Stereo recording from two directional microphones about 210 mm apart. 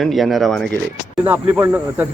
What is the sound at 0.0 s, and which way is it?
Speech, centre (ahead or behind).